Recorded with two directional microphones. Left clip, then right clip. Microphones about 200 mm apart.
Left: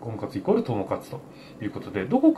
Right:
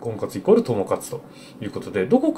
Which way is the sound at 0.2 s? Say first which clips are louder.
Right 6 dB; 20° right (ahead or behind).